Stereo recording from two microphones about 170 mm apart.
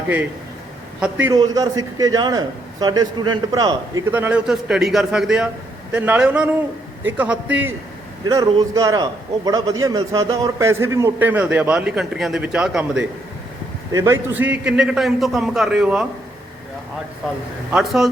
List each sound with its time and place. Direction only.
1.2 s a man's voice: 20° right (ahead or behind)
4.1 s a man's voice: 10° right (ahead or behind)
8.3 s a man's voice: 20° right (ahead or behind); by 13.1 s 5° right (ahead or behind)
13.9 s a man's voice: 15° right (ahead or behind)
17.7 s a man's voice: 5° right (ahead or behind)